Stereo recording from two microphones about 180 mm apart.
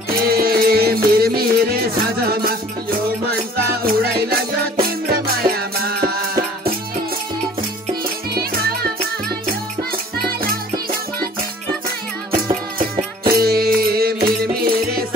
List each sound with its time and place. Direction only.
0.4 s music: 55° right (ahead or behind)
3.8 s music: 55° right (ahead or behind)
10.2 s music: 55° right (ahead or behind)
13.3 s music: 60° right (ahead or behind)